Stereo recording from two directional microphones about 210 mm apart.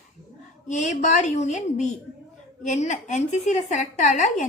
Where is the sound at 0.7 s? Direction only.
35° left (ahead or behind).